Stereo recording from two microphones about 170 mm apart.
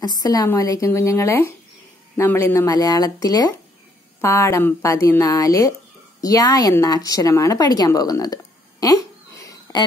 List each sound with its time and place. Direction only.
0.0 s a woman's voice: 20° left (ahead or behind)